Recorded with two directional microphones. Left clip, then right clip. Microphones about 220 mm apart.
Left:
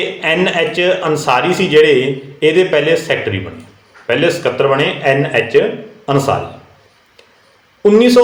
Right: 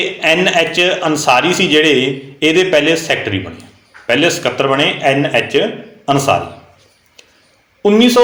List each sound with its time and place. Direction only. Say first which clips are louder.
0.2 s a man's voice: right 2 dB; 25° right (ahead or behind)
7.8 s speech: left 2 dB; 25° right (ahead or behind)